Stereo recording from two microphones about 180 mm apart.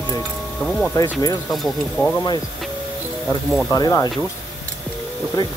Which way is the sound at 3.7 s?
20° left (ahead or behind).